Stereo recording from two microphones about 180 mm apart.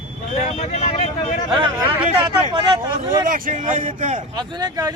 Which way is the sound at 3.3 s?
50° right (ahead or behind).